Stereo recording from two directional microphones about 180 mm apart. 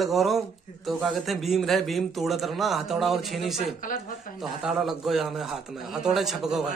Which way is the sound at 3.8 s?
50° left (ahead or behind).